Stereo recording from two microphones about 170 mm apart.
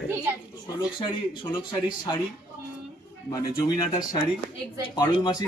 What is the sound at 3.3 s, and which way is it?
Speech, 20° left (ahead or behind).